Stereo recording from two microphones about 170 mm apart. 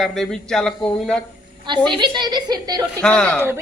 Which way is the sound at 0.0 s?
5° left (ahead or behind).